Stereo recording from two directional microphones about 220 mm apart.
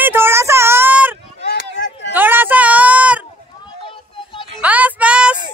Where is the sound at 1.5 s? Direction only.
55° left (ahead or behind).